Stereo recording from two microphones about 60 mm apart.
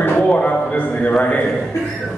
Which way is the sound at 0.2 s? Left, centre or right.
Left.